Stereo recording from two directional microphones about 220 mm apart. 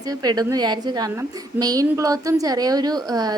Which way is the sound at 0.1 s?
20° right (ahead or behind).